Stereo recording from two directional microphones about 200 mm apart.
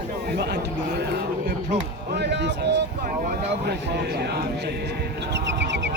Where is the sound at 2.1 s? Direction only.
55° right (ahead or behind).